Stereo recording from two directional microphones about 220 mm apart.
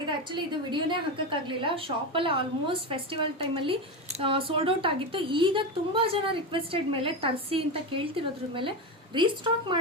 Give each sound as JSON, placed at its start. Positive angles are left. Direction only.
{"t": 0.3, "sound": "speech", "side_deg": -20}